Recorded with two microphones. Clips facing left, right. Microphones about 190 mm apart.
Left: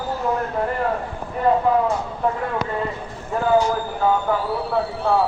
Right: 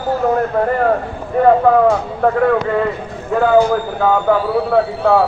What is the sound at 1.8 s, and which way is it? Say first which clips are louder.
A man's voice: right 8 dB; 85° right.